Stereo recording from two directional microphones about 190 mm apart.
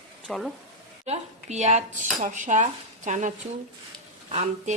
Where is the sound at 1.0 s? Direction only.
35° right (ahead or behind).